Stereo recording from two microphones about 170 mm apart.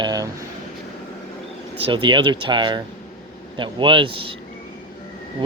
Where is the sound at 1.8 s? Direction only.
30° right (ahead or behind).